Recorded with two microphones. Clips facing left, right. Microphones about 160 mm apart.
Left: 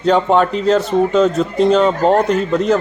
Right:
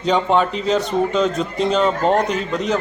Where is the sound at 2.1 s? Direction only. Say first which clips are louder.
Left 4 dB; 50° left (ahead or behind).